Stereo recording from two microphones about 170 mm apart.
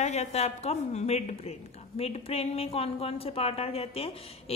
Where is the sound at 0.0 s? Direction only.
40° left (ahead or behind).